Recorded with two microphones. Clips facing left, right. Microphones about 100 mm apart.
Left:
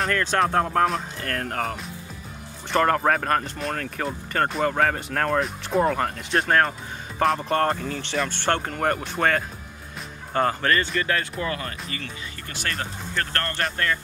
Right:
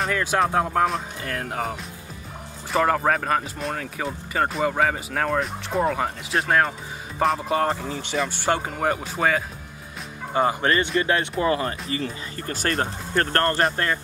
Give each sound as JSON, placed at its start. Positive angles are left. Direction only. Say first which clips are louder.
{"t": 0.0, "sound": "speech", "louder": "even", "side_deg": -10}
{"t": 10.3, "sound": "speech", "louder": "right 1 dB", "side_deg": -15}